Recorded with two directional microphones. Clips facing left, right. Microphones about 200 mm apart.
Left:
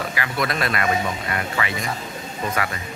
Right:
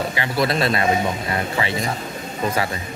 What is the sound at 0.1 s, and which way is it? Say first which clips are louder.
Speech: right 4 dB; 30° right (ahead or behind).